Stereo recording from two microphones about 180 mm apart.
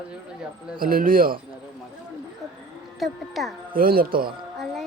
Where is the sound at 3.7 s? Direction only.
55° right (ahead or behind).